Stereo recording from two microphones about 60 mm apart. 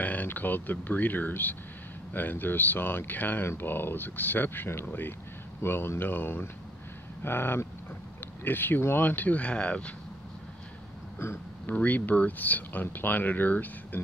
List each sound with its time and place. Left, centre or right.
0.0 s speech: left
11.7 s speech: left